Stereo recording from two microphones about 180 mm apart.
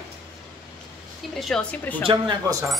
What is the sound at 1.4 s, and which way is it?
Speech, 5° left (ahead or behind).